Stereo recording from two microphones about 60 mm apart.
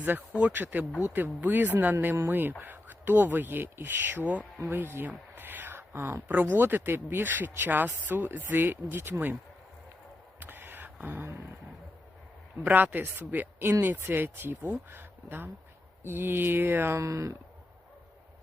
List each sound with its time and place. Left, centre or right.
0.0 s speech: right
4.6 s speech: right
5.0 s a sound: right
6.2 s speech: right
10.4 s a sound: right
12.6 s speech: right
17.0 s speech: right